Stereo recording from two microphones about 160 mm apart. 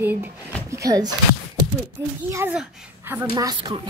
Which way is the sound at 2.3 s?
10° right (ahead or behind).